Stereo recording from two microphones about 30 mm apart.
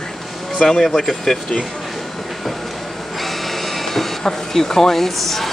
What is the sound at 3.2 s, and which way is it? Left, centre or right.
Printer, centre.